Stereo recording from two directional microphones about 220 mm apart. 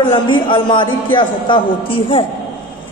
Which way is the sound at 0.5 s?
20° left (ahead or behind).